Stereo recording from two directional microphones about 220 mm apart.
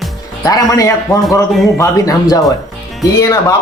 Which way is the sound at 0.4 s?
15° left (ahead or behind).